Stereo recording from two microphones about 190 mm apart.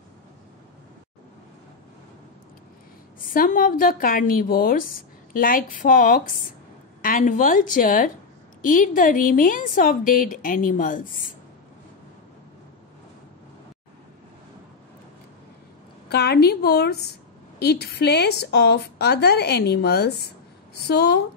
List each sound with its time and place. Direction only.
3.2 s a woman's voice: 45° left (ahead or behind)
16.1 s a woman's voice: 60° left (ahead or behind)